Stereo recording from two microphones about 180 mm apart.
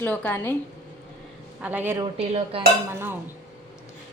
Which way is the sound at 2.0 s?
30° right (ahead or behind).